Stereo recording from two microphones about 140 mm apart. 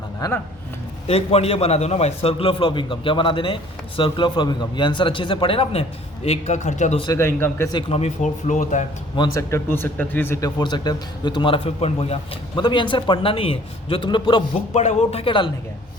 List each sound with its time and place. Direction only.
0.2 s speech: 25° left (ahead or behind)
1.0 s a man's voice: 45° left (ahead or behind)
7.2 s speech: 15° left (ahead or behind)
7.7 s speech: 40° left (ahead or behind); by 8.9 s 60° left (ahead or behind)
9.1 s a man's voice: 30° left (ahead or behind)
9.5 s speech: 15° left (ahead or behind)
10.6 s a man's voice: 30° left (ahead or behind)
14.7 s speech: 50° left (ahead or behind)